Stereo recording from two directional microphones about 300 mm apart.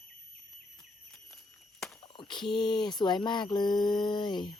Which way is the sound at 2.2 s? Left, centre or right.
Centre.